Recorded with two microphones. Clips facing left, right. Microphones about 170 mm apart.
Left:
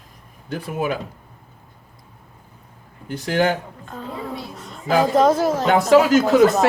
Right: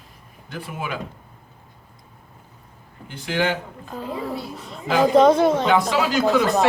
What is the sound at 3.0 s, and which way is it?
Speech, 45° left (ahead or behind).